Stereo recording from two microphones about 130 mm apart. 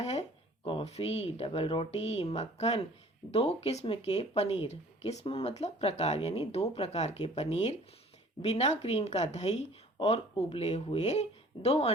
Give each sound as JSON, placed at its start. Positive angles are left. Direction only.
{"t": 0.0, "sound": "speech", "side_deg": 55}